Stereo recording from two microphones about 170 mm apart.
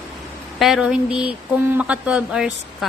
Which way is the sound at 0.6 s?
Centre (ahead or behind).